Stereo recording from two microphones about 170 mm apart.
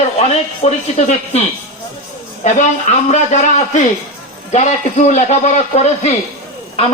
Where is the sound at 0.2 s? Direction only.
40° left (ahead or behind).